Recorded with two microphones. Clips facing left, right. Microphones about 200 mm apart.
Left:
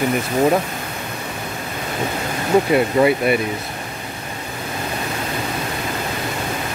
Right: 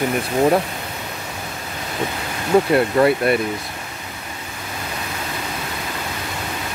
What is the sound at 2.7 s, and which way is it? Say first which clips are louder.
Speech: even; 5° left (ahead or behind).